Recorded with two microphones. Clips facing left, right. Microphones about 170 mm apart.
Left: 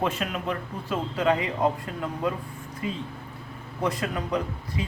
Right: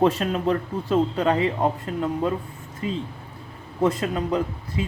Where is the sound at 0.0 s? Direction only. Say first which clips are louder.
Right 7 dB; 35° right (ahead or behind).